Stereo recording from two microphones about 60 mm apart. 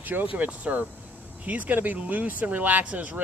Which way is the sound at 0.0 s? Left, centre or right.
Right.